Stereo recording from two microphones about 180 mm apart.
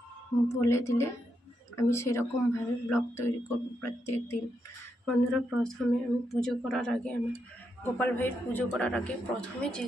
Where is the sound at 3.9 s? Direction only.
15° left (ahead or behind).